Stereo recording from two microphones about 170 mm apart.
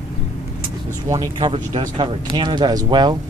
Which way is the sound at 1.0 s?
20° right (ahead or behind).